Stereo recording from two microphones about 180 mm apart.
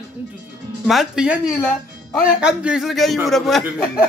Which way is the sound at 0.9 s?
5° right (ahead or behind).